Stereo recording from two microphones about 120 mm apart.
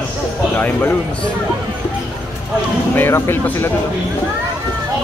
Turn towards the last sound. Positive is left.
turn(degrees=20)  # may be behind; listen again after turning